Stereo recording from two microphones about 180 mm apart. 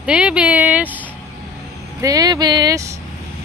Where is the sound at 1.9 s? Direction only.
20° right (ahead or behind).